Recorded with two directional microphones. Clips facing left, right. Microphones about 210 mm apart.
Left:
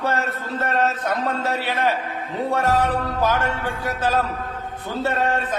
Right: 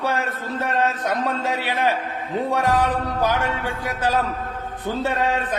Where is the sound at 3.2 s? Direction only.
15° right (ahead or behind).